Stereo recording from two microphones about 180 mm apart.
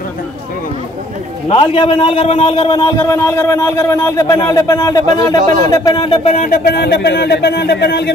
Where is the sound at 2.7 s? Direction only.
20° left (ahead or behind).